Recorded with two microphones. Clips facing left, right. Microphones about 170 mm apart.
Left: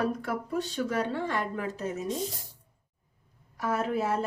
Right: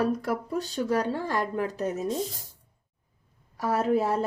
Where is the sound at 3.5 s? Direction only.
35° right (ahead or behind).